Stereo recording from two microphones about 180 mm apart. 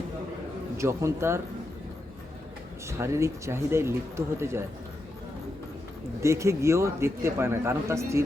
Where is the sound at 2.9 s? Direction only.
15° right (ahead or behind).